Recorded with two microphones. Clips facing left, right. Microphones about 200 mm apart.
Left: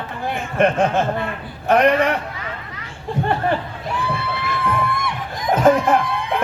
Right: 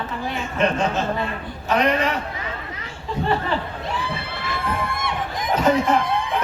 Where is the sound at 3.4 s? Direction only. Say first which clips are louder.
Left 4 dB; 55° left (ahead or behind).